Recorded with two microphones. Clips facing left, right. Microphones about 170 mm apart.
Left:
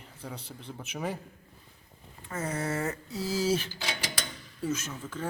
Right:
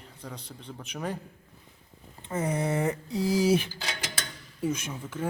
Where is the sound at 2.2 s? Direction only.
20° right (ahead or behind).